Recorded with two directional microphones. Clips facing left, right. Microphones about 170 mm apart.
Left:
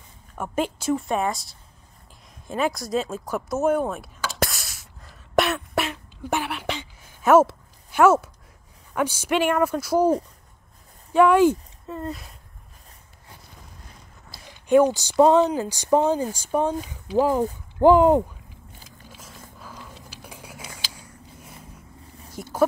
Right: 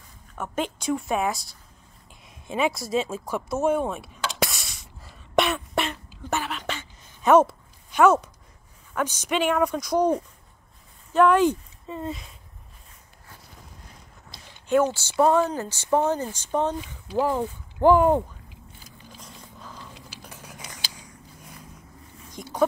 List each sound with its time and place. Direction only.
0.4 s a woman's voice: 5° left (ahead or behind)
2.4 s chop: centre (ahead or behind)
6.2 s a sound: 10° left (ahead or behind)
8.9 s speech: 10° left (ahead or behind)
11.1 s speech: 10° left (ahead or behind)
11.8 s speech: centre (ahead or behind)
14.3 s speech: 15° left (ahead or behind)
19.0 s biting: 5° left (ahead or behind)
22.3 s a sound: 5° left (ahead or behind)